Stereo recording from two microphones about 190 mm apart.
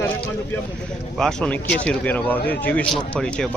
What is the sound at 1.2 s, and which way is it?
Speech, 5° left (ahead or behind).